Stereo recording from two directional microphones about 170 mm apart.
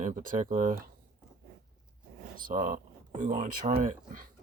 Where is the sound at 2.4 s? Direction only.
55° right (ahead or behind).